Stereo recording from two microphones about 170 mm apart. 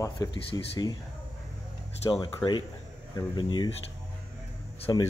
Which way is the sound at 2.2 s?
25° left (ahead or behind).